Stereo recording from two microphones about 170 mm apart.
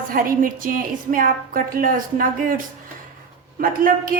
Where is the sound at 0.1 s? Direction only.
55° right (ahead or behind).